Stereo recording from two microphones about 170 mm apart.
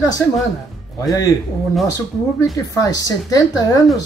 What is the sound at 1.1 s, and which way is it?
Speech, 20° left (ahead or behind).